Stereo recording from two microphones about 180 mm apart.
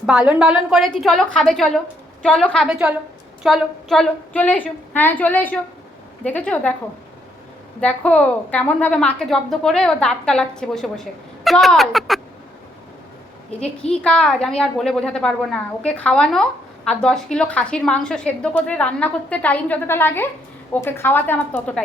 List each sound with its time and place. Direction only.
0.0 s a woman's voice: centre (ahead or behind)
7.8 s a woman's voice: 5° left (ahead or behind)
13.6 s a woman's voice: 5° left (ahead or behind)